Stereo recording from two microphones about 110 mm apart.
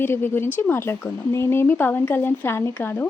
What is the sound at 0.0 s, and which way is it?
Speech, 20° left (ahead or behind).